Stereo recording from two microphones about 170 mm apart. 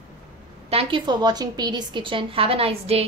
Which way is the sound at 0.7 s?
30° right (ahead or behind).